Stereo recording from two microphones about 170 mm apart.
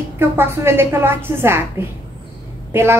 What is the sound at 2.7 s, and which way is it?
Speech, 10° right (ahead or behind).